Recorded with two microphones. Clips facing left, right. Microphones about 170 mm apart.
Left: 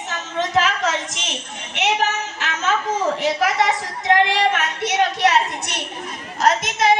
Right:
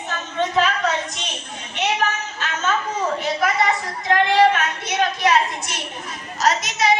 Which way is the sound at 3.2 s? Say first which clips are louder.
Left 1 dB; 90° left.